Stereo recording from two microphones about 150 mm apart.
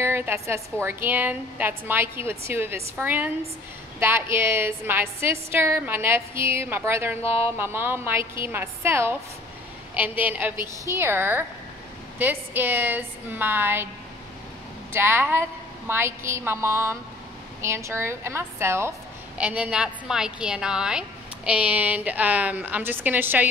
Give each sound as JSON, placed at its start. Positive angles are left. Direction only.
{"t": 0.0, "sound": "a woman's voice", "side_deg": -15}
{"t": 14.9, "sound": "a woman's voice", "side_deg": -15}